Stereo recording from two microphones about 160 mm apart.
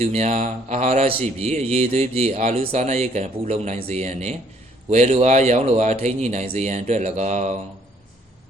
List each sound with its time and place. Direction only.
0.0 s a man's voice: 45° right (ahead or behind)